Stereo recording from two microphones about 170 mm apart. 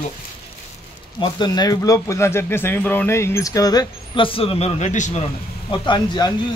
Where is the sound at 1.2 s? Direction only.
25° left (ahead or behind); by 5.2 s 45° left (ahead or behind).